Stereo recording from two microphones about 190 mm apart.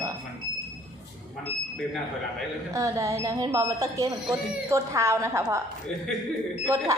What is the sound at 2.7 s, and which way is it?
Speech, 15° right (ahead or behind).